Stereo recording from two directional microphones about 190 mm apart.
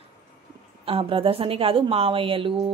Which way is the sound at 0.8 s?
30° right (ahead or behind).